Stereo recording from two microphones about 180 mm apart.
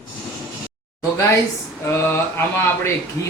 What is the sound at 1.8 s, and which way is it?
Speech, 15° left (ahead or behind).